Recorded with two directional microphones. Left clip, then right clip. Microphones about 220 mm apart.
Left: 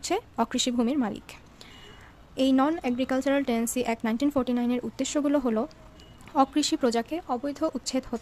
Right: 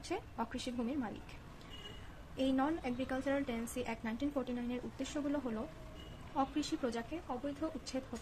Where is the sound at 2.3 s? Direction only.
50° left (ahead or behind).